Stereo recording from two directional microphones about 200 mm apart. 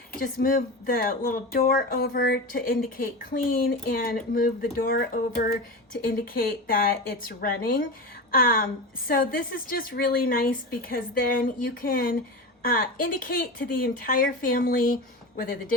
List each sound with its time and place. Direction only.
0.1 s a woman's voice: 45° left (ahead or behind)